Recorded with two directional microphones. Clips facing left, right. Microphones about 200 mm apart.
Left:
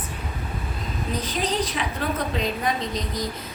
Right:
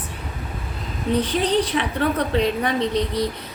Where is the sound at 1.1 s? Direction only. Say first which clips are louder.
Right 7 dB; 65° right (ahead or behind).